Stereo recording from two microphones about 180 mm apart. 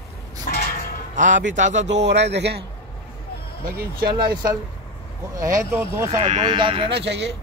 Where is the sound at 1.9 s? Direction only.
75° right (ahead or behind).